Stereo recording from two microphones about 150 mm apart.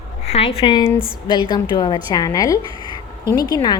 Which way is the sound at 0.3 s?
40° left (ahead or behind).